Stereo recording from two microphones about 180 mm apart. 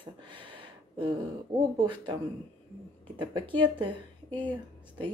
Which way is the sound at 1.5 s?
25° right (ahead or behind).